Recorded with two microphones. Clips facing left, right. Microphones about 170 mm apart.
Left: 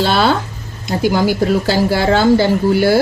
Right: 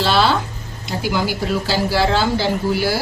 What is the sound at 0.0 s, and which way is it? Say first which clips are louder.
Speech: left 2 dB; 50° left (ahead or behind).